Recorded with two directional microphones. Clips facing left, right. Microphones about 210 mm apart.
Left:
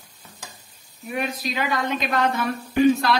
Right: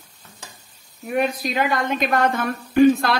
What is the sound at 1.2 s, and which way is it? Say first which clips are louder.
A woman's voice: right 5 dB; 55° right (ahead or behind).